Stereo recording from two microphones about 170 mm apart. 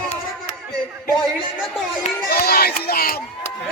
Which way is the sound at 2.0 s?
60° left (ahead or behind).